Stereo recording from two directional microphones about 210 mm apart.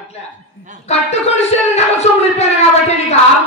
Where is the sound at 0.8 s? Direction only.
30° left (ahead or behind).